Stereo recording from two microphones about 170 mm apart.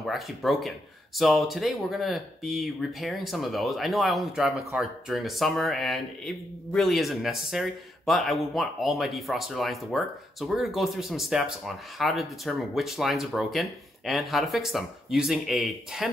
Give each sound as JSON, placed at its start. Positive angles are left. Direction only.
{"t": 0.0, "sound": "speech", "side_deg": 0}